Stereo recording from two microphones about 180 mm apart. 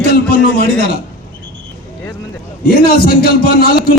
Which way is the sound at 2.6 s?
55° left (ahead or behind).